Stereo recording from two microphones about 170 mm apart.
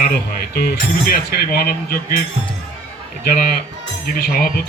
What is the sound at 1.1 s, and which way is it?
Speech, 65° left (ahead or behind).